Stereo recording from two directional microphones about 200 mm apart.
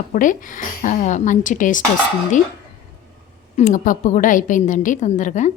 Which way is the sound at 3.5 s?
40° left (ahead or behind).